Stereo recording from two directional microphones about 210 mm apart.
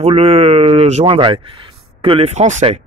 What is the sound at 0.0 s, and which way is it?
Speech, 30° right (ahead or behind).